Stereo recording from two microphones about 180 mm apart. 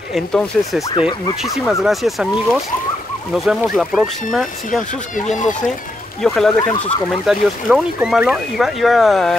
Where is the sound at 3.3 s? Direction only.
5° right (ahead or behind).